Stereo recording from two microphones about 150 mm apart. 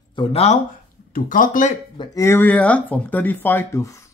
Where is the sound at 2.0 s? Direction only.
20° left (ahead or behind).